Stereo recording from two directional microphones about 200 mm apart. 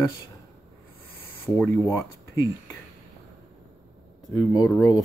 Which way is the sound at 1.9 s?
15° left (ahead or behind).